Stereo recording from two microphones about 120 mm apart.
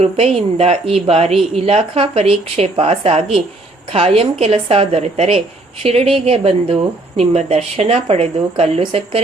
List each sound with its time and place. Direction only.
0.0 s a woman's voice: 60° right (ahead or behind)